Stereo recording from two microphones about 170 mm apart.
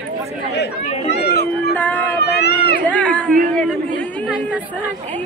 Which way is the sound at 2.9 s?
10° left (ahead or behind).